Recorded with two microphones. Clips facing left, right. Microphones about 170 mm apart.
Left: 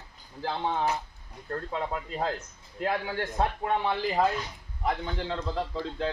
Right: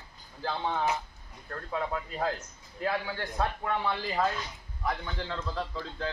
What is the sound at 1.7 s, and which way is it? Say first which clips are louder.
A man's voice: right 1 dB; 25° left (ahead or behind).